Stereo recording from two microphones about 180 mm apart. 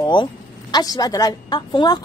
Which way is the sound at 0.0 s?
25° left (ahead or behind).